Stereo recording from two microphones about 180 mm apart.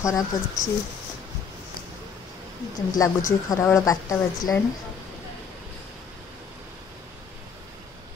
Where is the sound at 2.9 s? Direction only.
20° left (ahead or behind).